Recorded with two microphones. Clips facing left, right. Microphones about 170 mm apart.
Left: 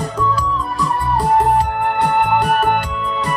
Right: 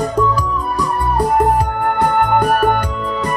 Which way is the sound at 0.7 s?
45° right (ahead or behind).